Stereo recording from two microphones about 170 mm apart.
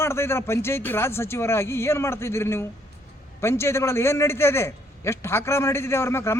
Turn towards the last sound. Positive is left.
turn(degrees=15)  # may be behind; listen again after turning